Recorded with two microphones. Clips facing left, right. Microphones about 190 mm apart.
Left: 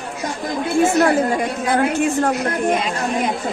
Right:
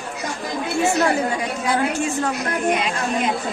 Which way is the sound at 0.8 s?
50° left (ahead or behind).